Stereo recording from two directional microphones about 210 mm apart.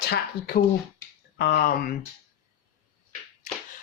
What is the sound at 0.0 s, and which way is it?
Speech, 50° left (ahead or behind).